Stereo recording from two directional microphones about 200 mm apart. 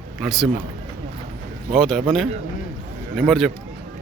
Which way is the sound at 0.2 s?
Centre (ahead or behind).